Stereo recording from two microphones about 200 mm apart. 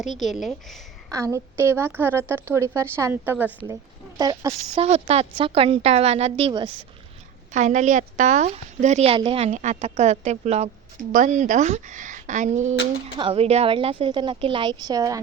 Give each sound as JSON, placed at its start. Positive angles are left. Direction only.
{"t": 0.2, "sound": "speech", "side_deg": 0}
{"t": 1.5, "sound": "speech", "side_deg": -10}
{"t": 4.2, "sound": "a woman's voice", "side_deg": -20}
{"t": 4.9, "sound": "a woman's voice", "side_deg": -30}
{"t": 7.5, "sound": "a woman's voice", "side_deg": -35}
{"t": 13.1, "sound": "a woman's voice", "side_deg": -25}